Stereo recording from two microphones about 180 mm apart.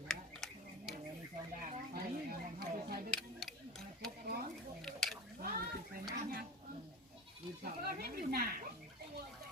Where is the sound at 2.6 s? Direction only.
55° right (ahead or behind).